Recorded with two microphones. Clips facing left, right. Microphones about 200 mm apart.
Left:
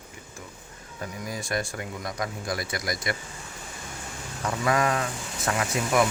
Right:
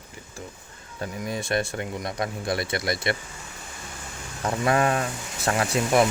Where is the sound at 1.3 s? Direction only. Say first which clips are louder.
Right 4 dB; 25° right (ahead or behind).